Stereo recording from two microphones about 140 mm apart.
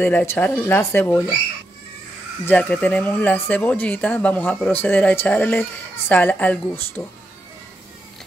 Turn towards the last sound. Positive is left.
turn(degrees=15)  # may be behind; listen again after turning